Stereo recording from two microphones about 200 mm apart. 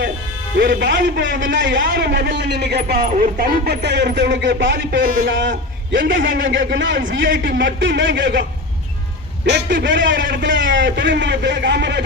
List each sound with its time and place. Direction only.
0.8 s a man's voice: 60° right (ahead or behind)
1.8 s a man's voice: 50° right (ahead or behind)
5.0 s a man's voice: 45° right (ahead or behind)
5.3 s a man's voice: 65° right (ahead or behind)
9.5 s a man's voice: 65° right (ahead or behind)